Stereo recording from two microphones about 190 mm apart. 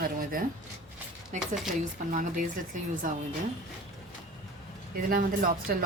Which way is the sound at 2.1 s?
45° right (ahead or behind).